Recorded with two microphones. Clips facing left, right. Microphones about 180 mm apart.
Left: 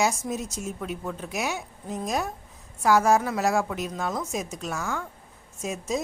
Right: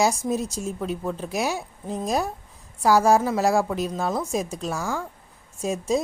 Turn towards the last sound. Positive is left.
turn(degrees=-35)  # may be behind; listen again after turning